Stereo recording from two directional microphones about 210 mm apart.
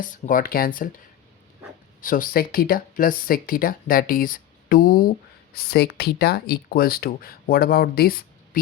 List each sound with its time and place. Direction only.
0.0 s speech: 40° left (ahead or behind)
2.0 s speech: 40° left (ahead or behind)